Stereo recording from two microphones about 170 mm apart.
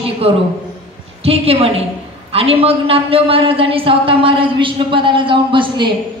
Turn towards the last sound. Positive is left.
turn(degrees=-30)  # may be behind; listen again after turning